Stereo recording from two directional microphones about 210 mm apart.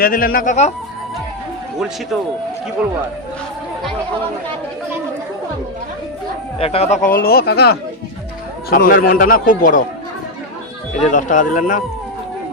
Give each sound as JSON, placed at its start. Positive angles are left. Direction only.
{"t": 0.0, "sound": "a man's voice", "side_deg": 45}
{"t": 6.6, "sound": "a man's voice", "side_deg": 30}
{"t": 11.1, "sound": "a man's voice", "side_deg": 35}